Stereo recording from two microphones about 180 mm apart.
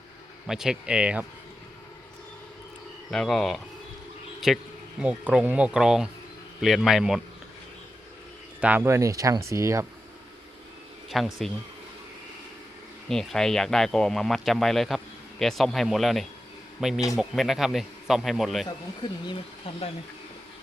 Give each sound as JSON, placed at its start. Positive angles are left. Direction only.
{"t": 0.4, "sound": "speech", "side_deg": -5}
{"t": 3.1, "sound": "speech", "side_deg": 0}
{"t": 8.6, "sound": "speech", "side_deg": -10}
{"t": 11.1, "sound": "speech", "side_deg": 0}
{"t": 13.1, "sound": "speech", "side_deg": 0}
{"t": 19.0, "sound": "speech", "side_deg": 30}